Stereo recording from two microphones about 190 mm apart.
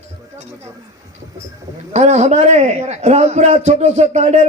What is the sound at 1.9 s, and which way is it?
A man's voice, 35° right (ahead or behind).